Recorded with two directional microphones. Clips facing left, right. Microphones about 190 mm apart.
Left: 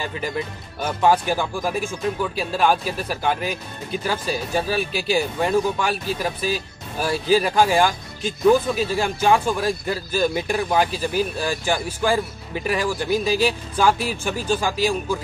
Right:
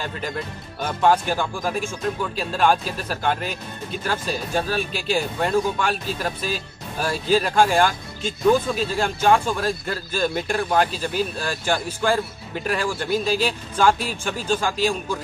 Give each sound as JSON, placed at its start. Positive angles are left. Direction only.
{"t": 0.7, "sound": "speech", "side_deg": 10}